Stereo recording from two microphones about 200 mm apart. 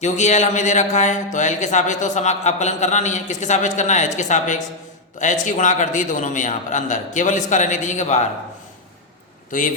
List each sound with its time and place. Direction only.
0.0 s speech: 35° left (ahead or behind)
9.5 s speech: 40° left (ahead or behind)